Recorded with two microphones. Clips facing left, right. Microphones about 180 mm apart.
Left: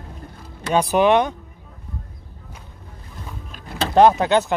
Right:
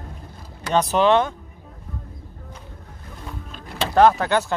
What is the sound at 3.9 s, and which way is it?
Speech, 20° left (ahead or behind).